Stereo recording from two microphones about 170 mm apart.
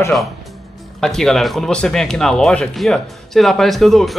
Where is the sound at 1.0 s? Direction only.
5° left (ahead or behind).